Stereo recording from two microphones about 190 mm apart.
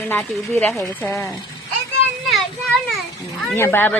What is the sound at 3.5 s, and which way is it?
Speech, 10° left (ahead or behind).